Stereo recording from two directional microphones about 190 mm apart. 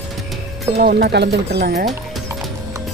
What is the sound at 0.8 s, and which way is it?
Speech, 55° right (ahead or behind).